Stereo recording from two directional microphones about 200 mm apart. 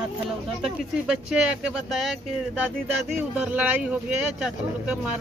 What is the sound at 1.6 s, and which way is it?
A man's voice, centre (ahead or behind).